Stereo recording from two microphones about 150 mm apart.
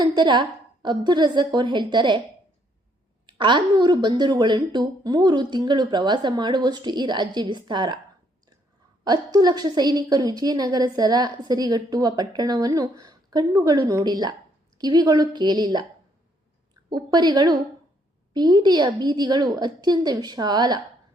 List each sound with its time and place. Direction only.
0.0 s a woman's voice: 30° right (ahead or behind)
3.2 s a woman's voice: 30° right (ahead or behind)
9.0 s a woman's voice: 25° right (ahead or behind)
16.9 s a woman's voice: 25° right (ahead or behind)